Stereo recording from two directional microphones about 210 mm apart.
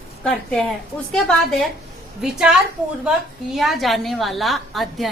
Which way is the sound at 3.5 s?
Centre (ahead or behind).